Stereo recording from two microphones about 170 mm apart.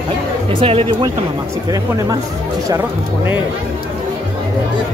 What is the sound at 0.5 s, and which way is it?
Speech, 35° right (ahead or behind).